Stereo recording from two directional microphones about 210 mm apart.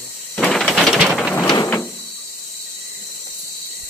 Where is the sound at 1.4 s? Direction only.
20° left (ahead or behind).